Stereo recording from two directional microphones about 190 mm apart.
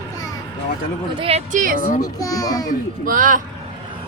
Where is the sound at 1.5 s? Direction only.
45° right (ahead or behind).